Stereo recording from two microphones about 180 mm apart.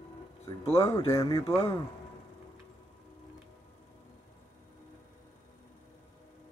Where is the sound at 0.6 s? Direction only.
35° left (ahead or behind).